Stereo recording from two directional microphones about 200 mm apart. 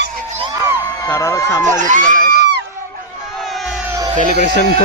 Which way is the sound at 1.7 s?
40° right (ahead or behind).